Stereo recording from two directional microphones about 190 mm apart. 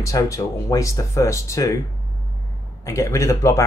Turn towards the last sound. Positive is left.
turn(degrees=15)  # may be behind; listen again after turning